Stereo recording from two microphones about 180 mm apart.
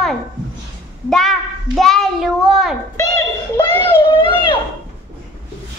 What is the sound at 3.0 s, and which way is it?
Speech, 20° left (ahead or behind).